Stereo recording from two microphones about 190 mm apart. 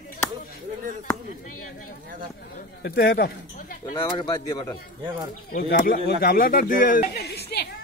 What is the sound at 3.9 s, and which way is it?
Speech, 25° left (ahead or behind).